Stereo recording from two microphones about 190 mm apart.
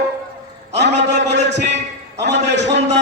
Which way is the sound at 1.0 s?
65° right (ahead or behind).